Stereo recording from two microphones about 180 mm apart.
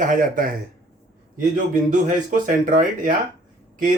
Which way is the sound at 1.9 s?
45° right (ahead or behind).